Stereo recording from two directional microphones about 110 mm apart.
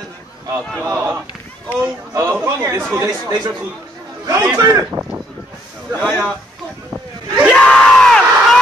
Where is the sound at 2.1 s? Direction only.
30° right (ahead or behind).